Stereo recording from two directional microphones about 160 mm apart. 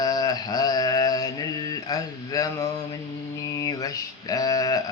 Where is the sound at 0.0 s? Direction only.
25° left (ahead or behind).